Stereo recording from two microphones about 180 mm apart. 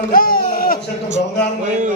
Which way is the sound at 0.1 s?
50° left (ahead or behind).